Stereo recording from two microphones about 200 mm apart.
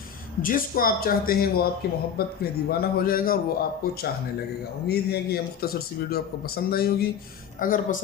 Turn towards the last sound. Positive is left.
turn(degrees=45)  # may be behind; listen again after turning